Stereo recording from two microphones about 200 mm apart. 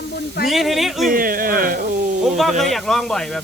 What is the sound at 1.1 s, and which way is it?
Speech, 45° right (ahead or behind).